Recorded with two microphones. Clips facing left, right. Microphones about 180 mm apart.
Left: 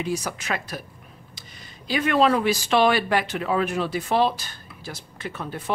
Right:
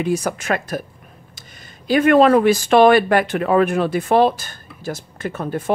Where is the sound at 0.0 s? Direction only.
50° right (ahead or behind).